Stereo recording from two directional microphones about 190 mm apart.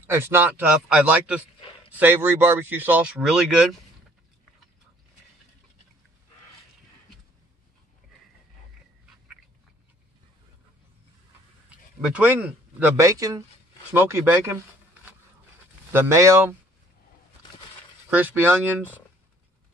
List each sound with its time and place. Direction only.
0.0 s speech: 10° right (ahead or behind)
12.0 s speech: 5° right (ahead or behind)
15.9 s speech: 15° right (ahead or behind)
18.1 s speech: 10° right (ahead or behind)